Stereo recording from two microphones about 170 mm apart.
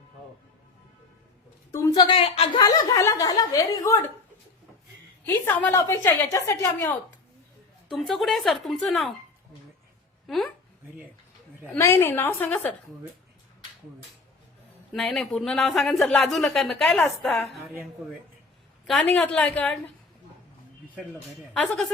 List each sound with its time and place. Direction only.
1.7 s a sound: 15° left (ahead or behind)
2.0 s a woman's voice: 30° left (ahead or behind)
2.6 s a woman's voice: 20° left (ahead or behind)
5.2 s a woman's voice: 10° left (ahead or behind)
7.9 s speech: centre (ahead or behind)
10.2 s speech: centre (ahead or behind)
11.8 s a woman's voice: 15° left (ahead or behind)
14.9 s speech: centre (ahead or behind)
18.9 s a woman's voice: 5° left (ahead or behind)
21.5 s speech: 5° left (ahead or behind)